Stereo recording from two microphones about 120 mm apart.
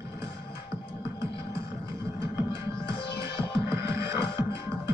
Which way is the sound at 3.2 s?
25° right (ahead or behind).